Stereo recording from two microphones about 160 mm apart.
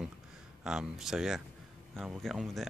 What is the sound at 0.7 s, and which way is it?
Speech, 5° right (ahead or behind).